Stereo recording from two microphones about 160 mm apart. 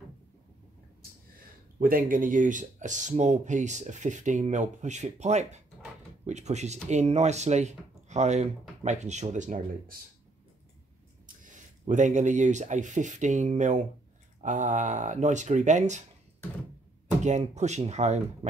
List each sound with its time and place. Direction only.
1.8 s speech: 60° right (ahead or behind)
11.2 s a sound: 55° right (ahead or behind)
11.8 s speech: 50° right (ahead or behind)
17.2 s speech: 45° right (ahead or behind)